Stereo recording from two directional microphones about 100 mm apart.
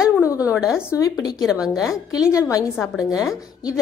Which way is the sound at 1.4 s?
5° right (ahead or behind).